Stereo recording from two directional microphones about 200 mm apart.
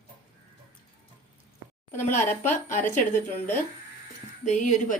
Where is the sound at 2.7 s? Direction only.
35° left (ahead or behind).